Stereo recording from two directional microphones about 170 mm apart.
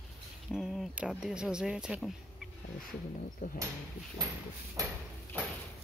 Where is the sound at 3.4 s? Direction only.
50° left (ahead or behind).